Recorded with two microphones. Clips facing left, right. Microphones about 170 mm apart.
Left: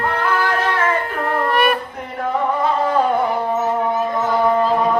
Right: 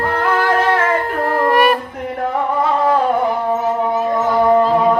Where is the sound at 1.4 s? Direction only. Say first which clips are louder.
Right 4 dB; 40° right (ahead or behind).